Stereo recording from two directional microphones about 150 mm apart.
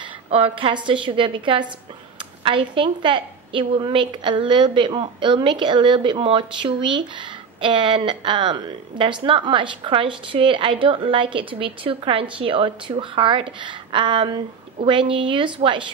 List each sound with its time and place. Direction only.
0.3 s a woman's voice: 40° right (ahead or behind)